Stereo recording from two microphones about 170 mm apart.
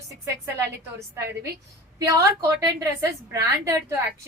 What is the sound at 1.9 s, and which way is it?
A woman's voice, 20° right (ahead or behind).